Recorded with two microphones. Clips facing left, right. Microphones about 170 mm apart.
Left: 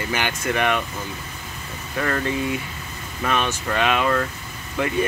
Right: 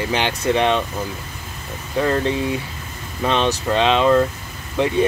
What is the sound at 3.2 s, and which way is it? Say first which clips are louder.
Speech: right 5 dB; 25° right (ahead or behind).